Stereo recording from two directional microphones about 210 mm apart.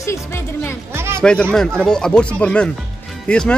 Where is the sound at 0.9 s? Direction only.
10° right (ahead or behind).